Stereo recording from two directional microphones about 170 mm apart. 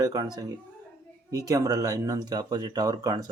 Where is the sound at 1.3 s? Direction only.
20° right (ahead or behind).